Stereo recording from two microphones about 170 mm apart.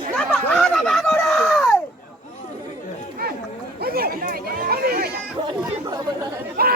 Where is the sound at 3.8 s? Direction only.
65° right (ahead or behind).